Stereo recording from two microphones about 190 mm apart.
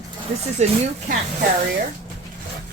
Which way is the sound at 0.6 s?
35° right (ahead or behind).